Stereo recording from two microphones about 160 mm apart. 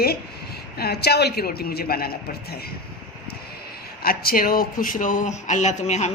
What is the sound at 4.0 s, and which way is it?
Speech, 70° left (ahead or behind).